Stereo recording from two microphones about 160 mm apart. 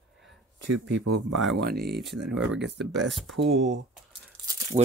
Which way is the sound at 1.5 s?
85° right.